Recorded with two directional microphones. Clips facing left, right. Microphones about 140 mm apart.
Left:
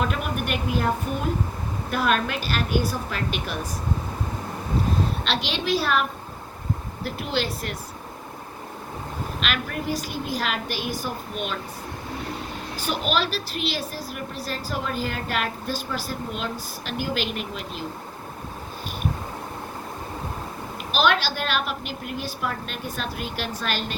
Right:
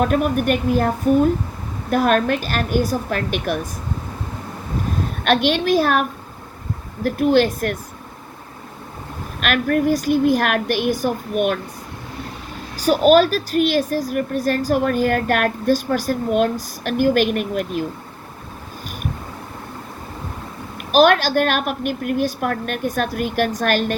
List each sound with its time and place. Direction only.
0.0 s speech: 45° right (ahead or behind)
5.2 s speech: 55° right (ahead or behind)
9.4 s speech: 55° right (ahead or behind)
12.7 s speech: 40° right (ahead or behind)
20.9 s speech: 45° right (ahead or behind)